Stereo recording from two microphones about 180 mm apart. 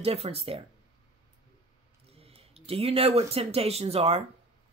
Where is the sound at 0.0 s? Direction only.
35° right (ahead or behind).